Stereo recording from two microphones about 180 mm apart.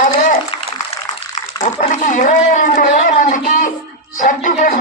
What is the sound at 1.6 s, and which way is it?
A man's voice, 40° left (ahead or behind).